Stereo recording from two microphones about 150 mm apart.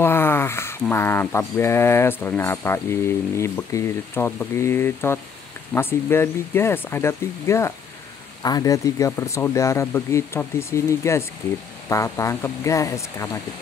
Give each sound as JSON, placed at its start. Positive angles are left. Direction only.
{"t": 0.0, "sound": "speech", "side_deg": 15}